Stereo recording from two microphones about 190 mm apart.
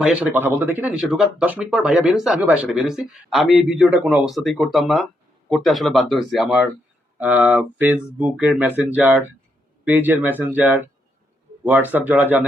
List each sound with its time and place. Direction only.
0.0 s speech: 5° right (ahead or behind)